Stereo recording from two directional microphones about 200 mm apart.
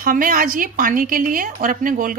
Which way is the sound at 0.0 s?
45° right (ahead or behind).